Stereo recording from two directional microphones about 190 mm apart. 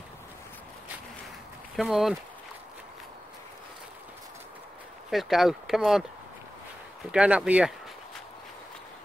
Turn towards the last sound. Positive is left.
turn(degrees=-5)  # may be behind; listen again after turning